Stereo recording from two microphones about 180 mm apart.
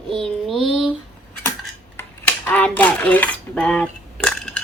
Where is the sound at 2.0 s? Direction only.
10° left (ahead or behind).